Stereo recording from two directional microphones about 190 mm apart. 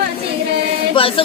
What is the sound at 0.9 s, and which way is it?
Chant, 30° left (ahead or behind).